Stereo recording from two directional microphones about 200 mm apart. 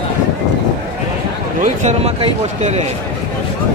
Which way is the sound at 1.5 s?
35° right (ahead or behind).